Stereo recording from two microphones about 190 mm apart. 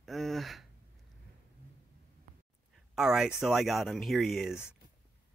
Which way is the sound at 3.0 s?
Centre (ahead or behind).